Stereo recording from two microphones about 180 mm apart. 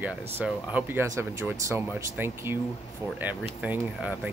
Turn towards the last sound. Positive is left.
turn(degrees=-10)  # may be behind; listen again after turning